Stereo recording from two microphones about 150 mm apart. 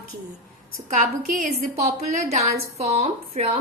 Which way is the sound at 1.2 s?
65° right (ahead or behind).